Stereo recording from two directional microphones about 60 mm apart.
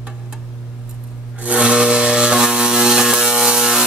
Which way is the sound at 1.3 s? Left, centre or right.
Right.